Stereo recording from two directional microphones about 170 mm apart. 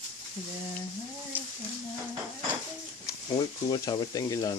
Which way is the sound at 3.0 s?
25° left (ahead or behind).